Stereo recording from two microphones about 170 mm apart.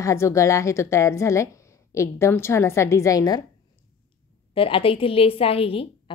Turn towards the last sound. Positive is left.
turn(degrees=35)  # may be behind; listen again after turning